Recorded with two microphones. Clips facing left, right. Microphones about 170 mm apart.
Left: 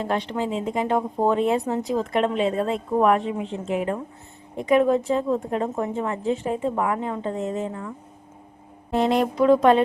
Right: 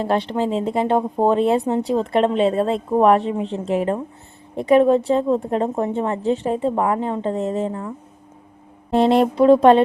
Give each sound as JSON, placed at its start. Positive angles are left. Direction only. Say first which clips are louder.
{"t": 0.0, "sound": "speech", "louder": "right 5 dB", "side_deg": -30}